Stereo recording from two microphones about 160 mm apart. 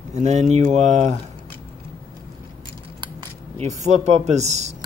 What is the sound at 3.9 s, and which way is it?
Speech, 40° right (ahead or behind).